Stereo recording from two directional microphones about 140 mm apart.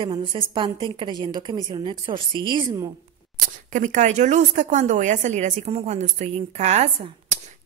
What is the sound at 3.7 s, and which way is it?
A woman's voice, 60° right (ahead or behind).